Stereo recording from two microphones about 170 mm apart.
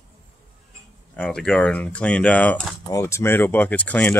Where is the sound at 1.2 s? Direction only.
5° left (ahead or behind).